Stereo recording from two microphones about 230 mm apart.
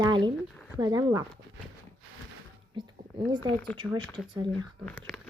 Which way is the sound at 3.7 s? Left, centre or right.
Right.